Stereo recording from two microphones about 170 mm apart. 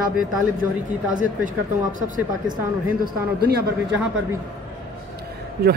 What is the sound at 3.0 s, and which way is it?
Speech, 65° right (ahead or behind).